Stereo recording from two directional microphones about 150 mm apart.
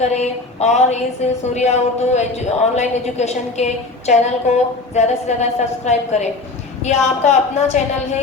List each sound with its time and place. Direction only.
0.0 s a woman's voice: 50° left (ahead or behind)